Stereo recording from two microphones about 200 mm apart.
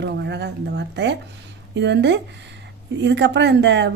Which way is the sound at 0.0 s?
60° right (ahead or behind).